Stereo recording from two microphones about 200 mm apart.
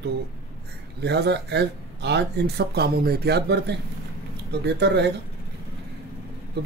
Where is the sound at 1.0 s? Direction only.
55° right (ahead or behind).